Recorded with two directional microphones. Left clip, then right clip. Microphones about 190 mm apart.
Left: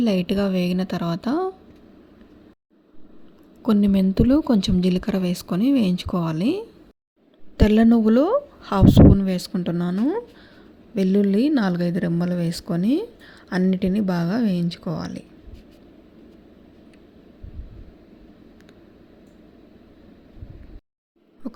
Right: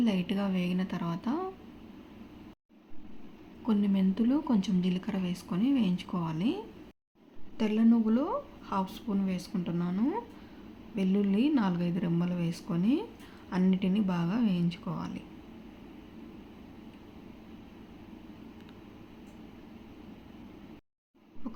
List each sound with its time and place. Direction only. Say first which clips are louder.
0.0 s speech: left 10 dB; 40° left (ahead or behind)
3.6 s speech: left 10 dB; 45° left (ahead or behind)